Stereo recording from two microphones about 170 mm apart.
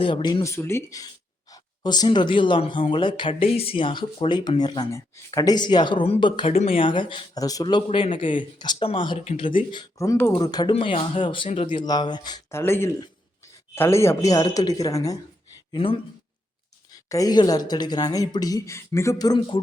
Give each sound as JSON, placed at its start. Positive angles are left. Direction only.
{"t": 0.0, "sound": "a man's voice", "side_deg": 25}
{"t": 9.2, "sound": "a man's voice", "side_deg": 40}
{"t": 9.7, "sound": "speech", "side_deg": 20}
{"t": 15.7, "sound": "speech", "side_deg": 30}
{"t": 17.1, "sound": "speech", "side_deg": 20}